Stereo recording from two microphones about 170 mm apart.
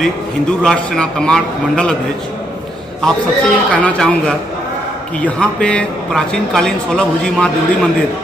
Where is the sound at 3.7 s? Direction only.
5° left (ahead or behind).